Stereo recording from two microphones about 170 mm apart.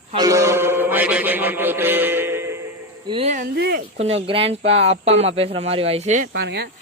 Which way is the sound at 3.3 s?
70° right (ahead or behind).